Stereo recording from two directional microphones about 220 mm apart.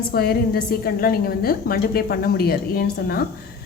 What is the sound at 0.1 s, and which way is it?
A woman's voice, 45° left (ahead or behind).